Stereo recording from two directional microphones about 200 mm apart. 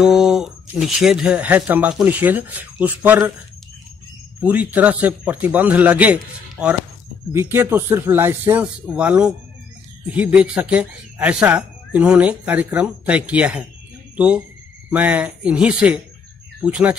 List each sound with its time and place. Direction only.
0.0 s speech: 5° right (ahead or behind)
4.4 s speech: 5° right (ahead or behind)